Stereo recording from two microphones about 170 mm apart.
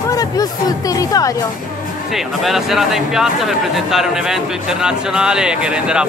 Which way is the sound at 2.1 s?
Centre (ahead or behind).